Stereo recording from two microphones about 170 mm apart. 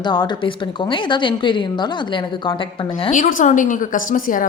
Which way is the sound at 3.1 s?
50° left (ahead or behind).